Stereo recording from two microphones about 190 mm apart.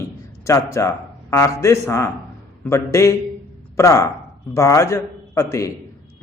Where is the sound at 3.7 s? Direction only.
15° left (ahead or behind).